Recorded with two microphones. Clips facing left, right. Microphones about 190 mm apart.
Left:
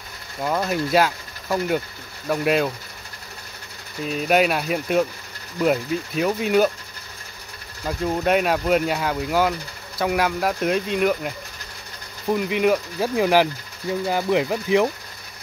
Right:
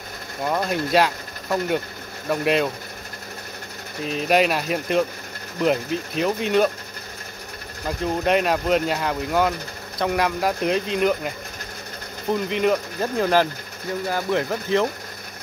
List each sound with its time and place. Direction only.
0.5 s speech: centre (ahead or behind)
4.0 s speech: centre (ahead or behind)
8.2 s speech: centre (ahead or behind)
12.4 s speech: 5° left (ahead or behind)